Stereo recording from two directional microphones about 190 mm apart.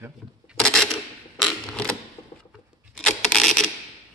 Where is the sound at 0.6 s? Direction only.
5° left (ahead or behind).